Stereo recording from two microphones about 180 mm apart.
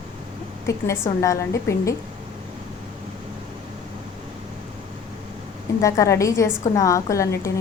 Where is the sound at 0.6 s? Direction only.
15° left (ahead or behind).